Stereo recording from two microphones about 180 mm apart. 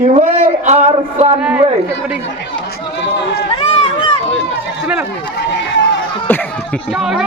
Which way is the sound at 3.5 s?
30° left (ahead or behind).